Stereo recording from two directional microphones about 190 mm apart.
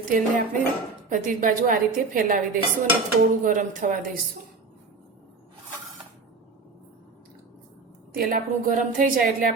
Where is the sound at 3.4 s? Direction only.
45° right (ahead or behind).